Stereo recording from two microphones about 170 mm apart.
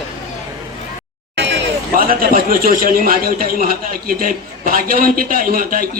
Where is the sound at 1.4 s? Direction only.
90° right.